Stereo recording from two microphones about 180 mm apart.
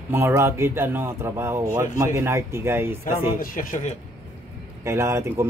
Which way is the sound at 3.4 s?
50° left (ahead or behind).